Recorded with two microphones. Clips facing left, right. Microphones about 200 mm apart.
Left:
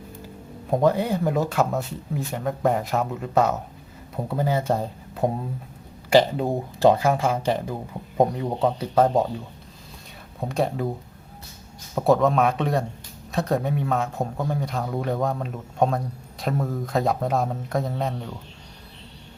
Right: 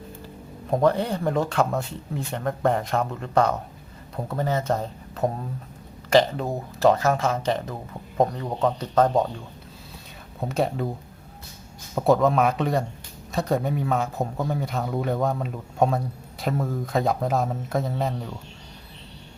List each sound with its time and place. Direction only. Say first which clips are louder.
0.7 s speech: left 1 dB; 5° left (ahead or behind)
10.5 s speech: even; centre (ahead or behind)
11.9 s speech: even; centre (ahead or behind)